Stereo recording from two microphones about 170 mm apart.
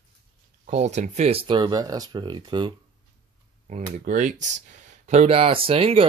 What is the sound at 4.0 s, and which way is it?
Speech, 50° right (ahead or behind).